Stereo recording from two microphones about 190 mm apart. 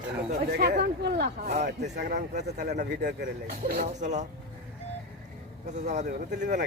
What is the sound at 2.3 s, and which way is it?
Speech, 60° right (ahead or behind).